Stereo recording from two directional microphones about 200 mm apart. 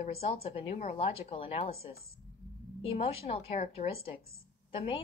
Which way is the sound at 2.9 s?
30° left (ahead or behind).